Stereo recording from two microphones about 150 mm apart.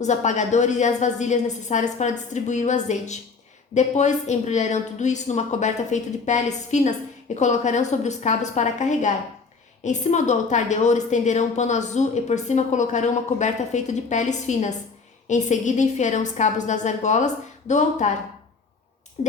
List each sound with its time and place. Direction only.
0.0 s a woman's voice: 50° left (ahead or behind)
19.2 s a woman's voice: 50° left (ahead or behind)